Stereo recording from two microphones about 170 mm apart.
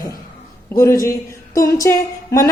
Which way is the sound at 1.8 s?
15° left (ahead or behind).